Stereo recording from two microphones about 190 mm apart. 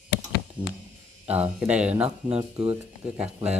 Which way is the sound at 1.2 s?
10° right (ahead or behind).